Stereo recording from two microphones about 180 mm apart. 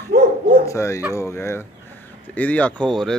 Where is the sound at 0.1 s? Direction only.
60° right (ahead or behind).